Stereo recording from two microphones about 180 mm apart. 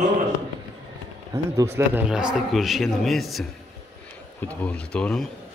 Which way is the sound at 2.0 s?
5° right (ahead or behind).